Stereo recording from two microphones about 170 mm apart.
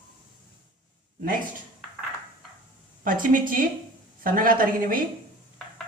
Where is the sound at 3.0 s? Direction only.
55° right (ahead or behind).